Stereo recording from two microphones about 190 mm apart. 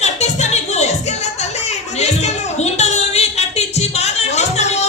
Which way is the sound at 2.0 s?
35° left (ahead or behind).